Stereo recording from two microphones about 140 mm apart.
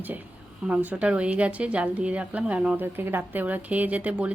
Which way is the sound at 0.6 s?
10° right (ahead or behind).